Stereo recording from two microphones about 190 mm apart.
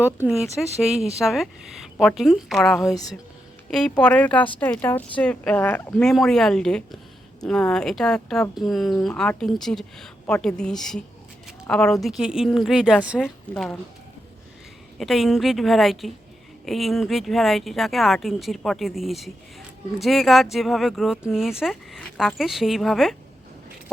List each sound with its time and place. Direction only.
0.0 s speech: 5° right (ahead or behind)
2.8 s a woman's voice: 20° left (ahead or behind)
3.7 s speech: 5° left (ahead or behind)
14.9 s speech: centre (ahead or behind)